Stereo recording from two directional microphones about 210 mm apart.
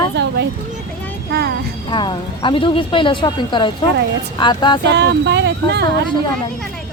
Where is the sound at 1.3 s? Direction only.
50° right (ahead or behind).